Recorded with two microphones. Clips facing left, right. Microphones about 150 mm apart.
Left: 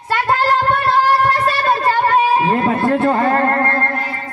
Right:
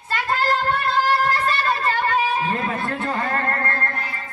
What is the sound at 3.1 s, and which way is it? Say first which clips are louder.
Music: left 9 dB; 45° left (ahead or behind).